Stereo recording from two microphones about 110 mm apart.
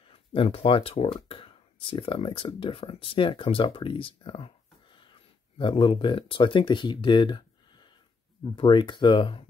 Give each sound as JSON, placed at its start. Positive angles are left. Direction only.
{"t": 0.1, "sound": "speech", "side_deg": 55}